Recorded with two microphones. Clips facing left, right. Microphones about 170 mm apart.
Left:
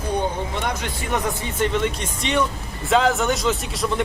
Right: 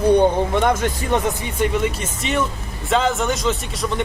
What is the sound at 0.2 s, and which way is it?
Speech, 50° right (ahead or behind).